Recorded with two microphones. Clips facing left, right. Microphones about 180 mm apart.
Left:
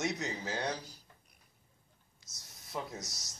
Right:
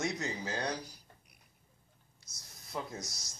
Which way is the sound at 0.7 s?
10° right (ahead or behind).